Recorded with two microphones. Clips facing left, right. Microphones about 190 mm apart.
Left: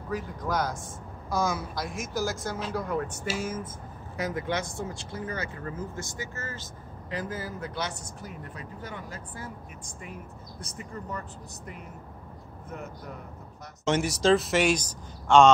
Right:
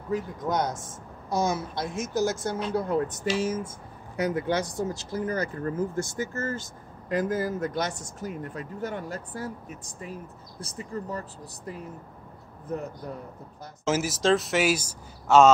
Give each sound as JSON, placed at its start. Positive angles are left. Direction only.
{"t": 0.1, "sound": "a woman's voice", "side_deg": -20}
{"t": 4.2, "sound": "speech", "side_deg": -30}
{"t": 13.8, "sound": "speech", "side_deg": 0}